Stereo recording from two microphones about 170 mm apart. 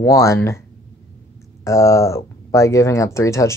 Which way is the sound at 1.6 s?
20° left (ahead or behind).